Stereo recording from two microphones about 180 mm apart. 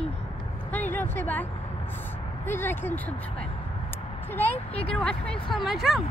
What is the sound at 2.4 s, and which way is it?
Speech, 10° left (ahead or behind).